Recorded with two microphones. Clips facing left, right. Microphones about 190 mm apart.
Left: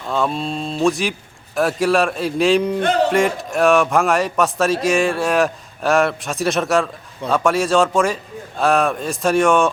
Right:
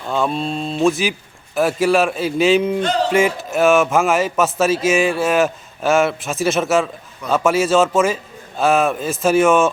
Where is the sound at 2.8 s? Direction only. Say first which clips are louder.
Left 2 dB; 55° left (ahead or behind).